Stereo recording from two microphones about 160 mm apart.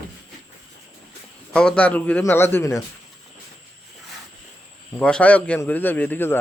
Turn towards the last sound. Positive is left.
turn(degrees=15)  # may be behind; listen again after turning